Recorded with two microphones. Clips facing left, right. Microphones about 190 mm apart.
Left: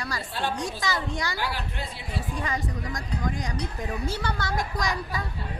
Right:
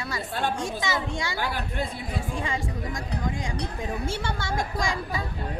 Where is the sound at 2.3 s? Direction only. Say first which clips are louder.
Left 2 dB; 25° right (ahead or behind).